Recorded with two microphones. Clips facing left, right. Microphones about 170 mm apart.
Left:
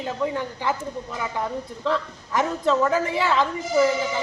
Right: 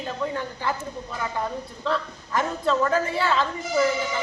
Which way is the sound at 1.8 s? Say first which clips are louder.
Left 2 dB; 15° left (ahead or behind).